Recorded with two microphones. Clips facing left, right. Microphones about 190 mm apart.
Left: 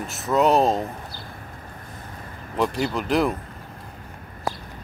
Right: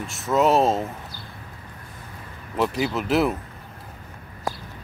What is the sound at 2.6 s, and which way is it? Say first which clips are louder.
Speech: even; 5° right (ahead or behind).